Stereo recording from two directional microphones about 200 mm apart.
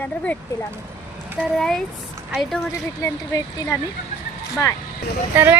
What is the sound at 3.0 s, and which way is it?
Speech, 15° left (ahead or behind).